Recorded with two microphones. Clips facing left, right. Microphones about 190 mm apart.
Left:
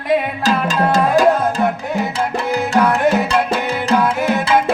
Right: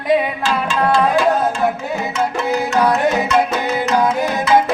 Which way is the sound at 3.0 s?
30° left (ahead or behind).